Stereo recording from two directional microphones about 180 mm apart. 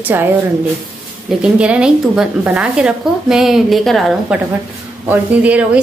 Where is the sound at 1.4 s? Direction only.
5° right (ahead or behind).